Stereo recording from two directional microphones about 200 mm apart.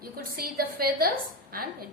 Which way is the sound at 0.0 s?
50° right (ahead or behind).